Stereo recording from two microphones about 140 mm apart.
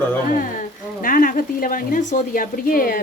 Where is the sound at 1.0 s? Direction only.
75° left (ahead or behind).